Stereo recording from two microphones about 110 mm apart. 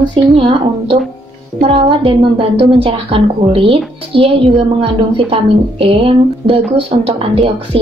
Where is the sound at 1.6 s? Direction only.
55° right (ahead or behind).